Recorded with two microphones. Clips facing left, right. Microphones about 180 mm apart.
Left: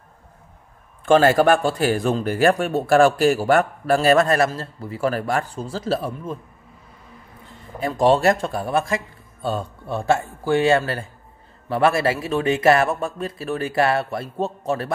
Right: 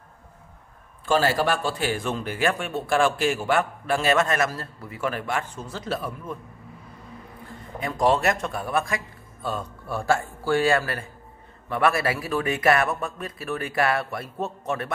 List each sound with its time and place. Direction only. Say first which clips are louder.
1.0 s a man's voice: left 7 dB; 55° left (ahead or behind); by 6.3 s 30° left (ahead or behind)
7.8 s speech: left 5 dB; 30° left (ahead or behind)